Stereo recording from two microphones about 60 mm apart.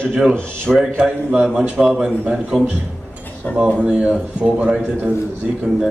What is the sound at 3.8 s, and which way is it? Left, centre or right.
A man's voice, centre.